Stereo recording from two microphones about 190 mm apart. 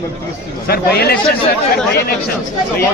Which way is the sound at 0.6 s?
55° left (ahead or behind).